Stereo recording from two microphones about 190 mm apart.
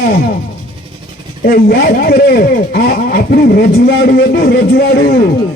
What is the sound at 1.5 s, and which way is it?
Speech, 55° left (ahead or behind).